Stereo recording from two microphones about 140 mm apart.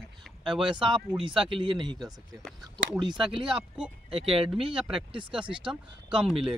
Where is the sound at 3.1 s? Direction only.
40° right (ahead or behind).